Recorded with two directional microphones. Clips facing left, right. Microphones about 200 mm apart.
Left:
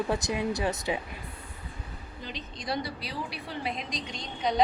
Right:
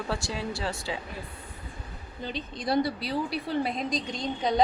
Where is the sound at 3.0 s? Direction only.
40° right (ahead or behind).